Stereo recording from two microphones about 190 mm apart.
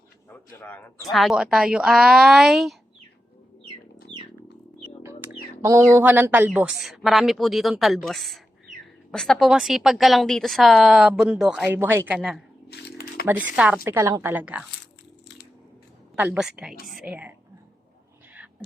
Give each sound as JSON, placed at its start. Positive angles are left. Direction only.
{"t": 0.6, "sound": "speech", "side_deg": 10}
{"t": 1.1, "sound": "speech", "side_deg": 0}
{"t": 5.0, "sound": "speech", "side_deg": -10}
{"t": 12.6, "sound": "a sound", "side_deg": 60}
{"t": 13.6, "sound": "a woman's voice", "side_deg": -5}
{"t": 16.1, "sound": "a woman's voice", "side_deg": -10}